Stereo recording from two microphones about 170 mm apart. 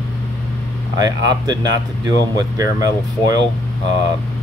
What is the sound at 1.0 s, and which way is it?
Speech, 25° right (ahead or behind).